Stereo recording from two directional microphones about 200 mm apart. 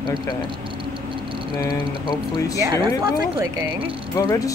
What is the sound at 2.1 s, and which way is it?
Speech, 20° left (ahead or behind).